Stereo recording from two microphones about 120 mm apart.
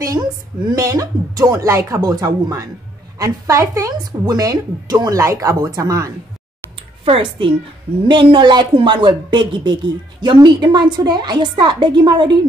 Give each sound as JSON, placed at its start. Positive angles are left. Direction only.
{"t": 0.7, "sound": "a woman's voice", "side_deg": -30}
{"t": 7.1, "sound": "a child's voice", "side_deg": -45}